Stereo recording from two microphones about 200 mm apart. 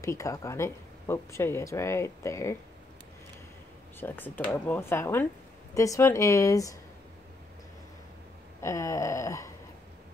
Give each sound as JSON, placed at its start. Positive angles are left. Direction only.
{"t": 0.0, "sound": "speech", "side_deg": 15}
{"t": 4.0, "sound": "speech", "side_deg": 10}
{"t": 8.5, "sound": "speech", "side_deg": 15}